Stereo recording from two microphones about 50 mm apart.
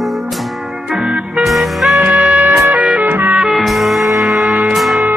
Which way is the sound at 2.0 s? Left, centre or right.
Right.